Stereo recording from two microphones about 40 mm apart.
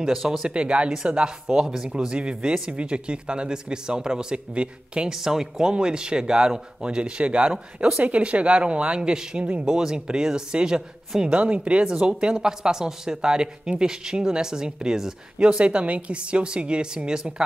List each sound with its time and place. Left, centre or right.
0.0 s speech: centre
0.5 s speech: right
5.1 s speech: centre
9.4 s speech: right
11.2 s speech: right
15.3 s speech: right